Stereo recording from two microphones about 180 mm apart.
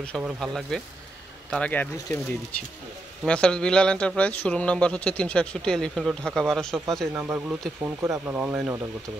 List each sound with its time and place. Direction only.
0.2 s speech: centre (ahead or behind)
3.3 s speech: 5° left (ahead or behind)